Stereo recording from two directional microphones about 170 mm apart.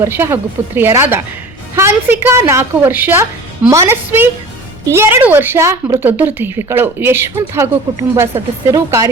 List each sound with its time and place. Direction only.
0.0 s a woman's voice: 15° right (ahead or behind)
8.7 s speech: 20° right (ahead or behind)